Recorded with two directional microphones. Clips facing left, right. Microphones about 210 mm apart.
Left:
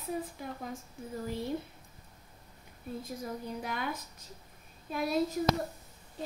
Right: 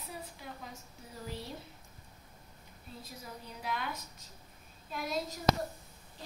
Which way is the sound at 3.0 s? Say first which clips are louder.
Left 8 dB; 50° left (ahead or behind).